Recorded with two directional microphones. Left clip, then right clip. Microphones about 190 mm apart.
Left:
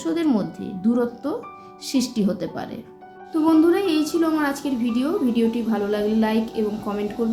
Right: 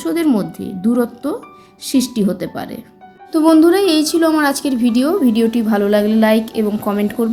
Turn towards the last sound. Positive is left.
turn(degrees=-50)  # may be behind; listen again after turning